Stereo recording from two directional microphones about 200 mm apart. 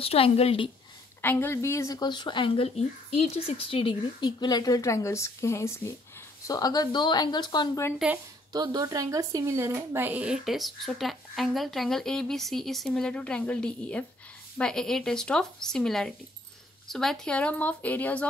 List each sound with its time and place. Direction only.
0.0 s speech: 30° left (ahead or behind)
1.2 s speech: 10° left (ahead or behind)
8.5 s speech: 20° right (ahead or behind); by 18.2 s 10° left (ahead or behind)